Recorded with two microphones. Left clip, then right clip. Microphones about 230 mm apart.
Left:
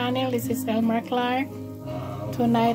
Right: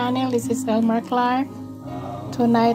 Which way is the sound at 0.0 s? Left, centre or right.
Centre.